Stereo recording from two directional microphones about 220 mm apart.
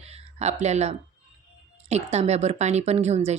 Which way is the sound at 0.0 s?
30° right (ahead or behind).